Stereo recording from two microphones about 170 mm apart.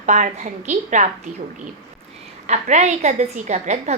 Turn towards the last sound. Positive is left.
turn(degrees=-40)  # may be behind; listen again after turning